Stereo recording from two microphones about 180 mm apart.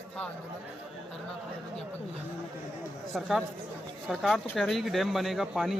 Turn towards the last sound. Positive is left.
turn(degrees=0)  # may be behind; listen again after turning